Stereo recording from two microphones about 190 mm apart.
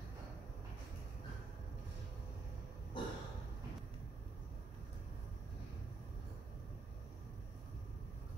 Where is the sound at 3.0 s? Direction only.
25° left (ahead or behind).